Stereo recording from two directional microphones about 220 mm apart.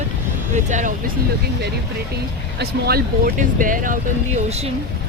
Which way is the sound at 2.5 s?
45° right (ahead or behind).